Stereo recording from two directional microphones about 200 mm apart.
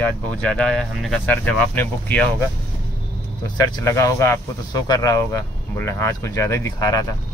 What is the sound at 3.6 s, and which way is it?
Speech, 15° left (ahead or behind).